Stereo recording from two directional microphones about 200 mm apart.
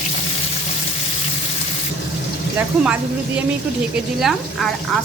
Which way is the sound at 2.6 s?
10° right (ahead or behind).